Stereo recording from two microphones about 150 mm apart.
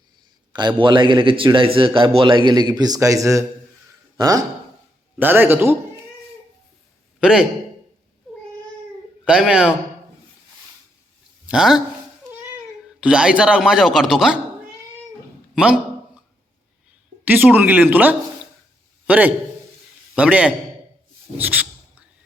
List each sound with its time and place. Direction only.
0.8 s a man's voice: 35° right (ahead or behind)
5.2 s speech: 15° right (ahead or behind)
7.2 s a man's voice: 5° right (ahead or behind)
9.2 s speech: 5° right (ahead or behind)
11.4 s speech: 5° right (ahead or behind)
13.0 s speech: 5° right (ahead or behind)
15.5 s a sound: 5° right (ahead or behind)
17.2 s a man's voice: 10° right (ahead or behind)